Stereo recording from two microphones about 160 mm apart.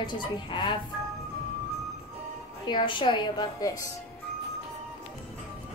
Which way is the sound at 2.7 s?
30° left (ahead or behind).